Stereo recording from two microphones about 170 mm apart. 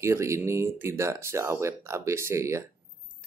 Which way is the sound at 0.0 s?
15° right (ahead or behind).